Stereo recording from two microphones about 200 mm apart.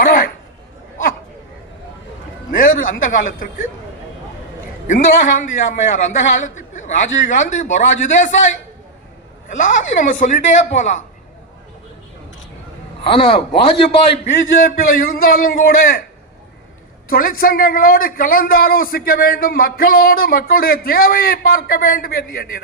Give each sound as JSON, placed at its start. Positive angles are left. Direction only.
{"t": 0.0, "sound": "a sound", "side_deg": 45}
{"t": 2.5, "sound": "a man's voice", "side_deg": 45}
{"t": 4.9, "sound": "a man's voice", "side_deg": 40}
{"t": 9.9, "sound": "a man's voice", "side_deg": 40}
{"t": 13.1, "sound": "a man's voice", "side_deg": 25}
{"t": 14.8, "sound": "a man's voice", "side_deg": 45}
{"t": 17.1, "sound": "a man's voice", "side_deg": 45}